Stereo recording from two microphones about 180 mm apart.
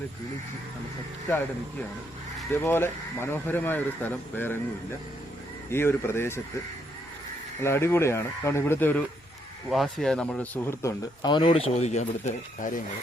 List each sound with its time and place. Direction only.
2.5 s speech: 10° left (ahead or behind)
5.7 s speech: 10° left (ahead or behind)
7.6 s speech: 15° left (ahead or behind)
9.6 s speech: centre (ahead or behind); by 12.8 s 40° left (ahead or behind)